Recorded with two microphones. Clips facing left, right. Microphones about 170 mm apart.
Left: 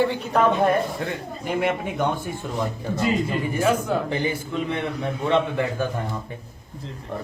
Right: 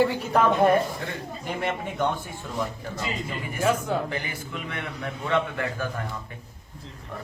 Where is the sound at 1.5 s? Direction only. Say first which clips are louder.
Left 6 dB; 10° left (ahead or behind).